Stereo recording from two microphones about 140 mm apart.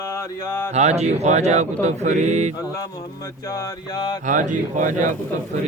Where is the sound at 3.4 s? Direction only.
25° left (ahead or behind).